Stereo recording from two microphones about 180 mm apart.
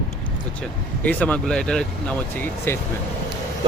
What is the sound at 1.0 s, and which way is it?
Speech, 5° left (ahead or behind).